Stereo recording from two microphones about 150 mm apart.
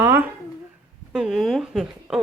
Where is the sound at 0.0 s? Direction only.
15° right (ahead or behind).